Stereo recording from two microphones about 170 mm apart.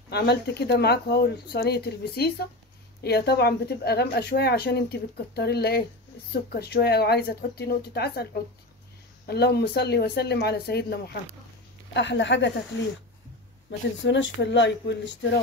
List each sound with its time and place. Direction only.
0.1 s speech: 75° left (ahead or behind)
11.9 s speech: 90° left
13.7 s speech: 90° left